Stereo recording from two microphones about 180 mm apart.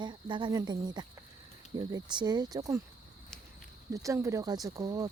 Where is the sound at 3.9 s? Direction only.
15° right (ahead or behind).